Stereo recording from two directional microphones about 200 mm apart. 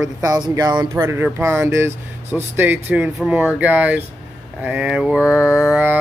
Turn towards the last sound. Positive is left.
turn(degrees=-5)  # may be behind; listen again after turning